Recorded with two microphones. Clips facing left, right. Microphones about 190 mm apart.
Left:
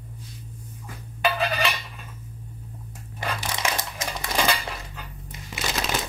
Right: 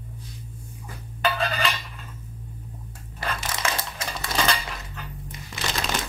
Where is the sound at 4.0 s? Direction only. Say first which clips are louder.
Left 1 dB; 15° left (ahead or behind).